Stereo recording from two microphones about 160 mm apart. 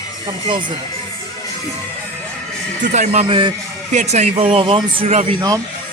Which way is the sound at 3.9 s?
45° right (ahead or behind).